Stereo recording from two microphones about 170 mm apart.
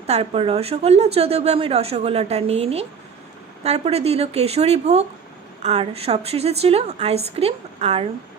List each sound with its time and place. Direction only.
0.0 s a woman's voice: 35° right (ahead or behind)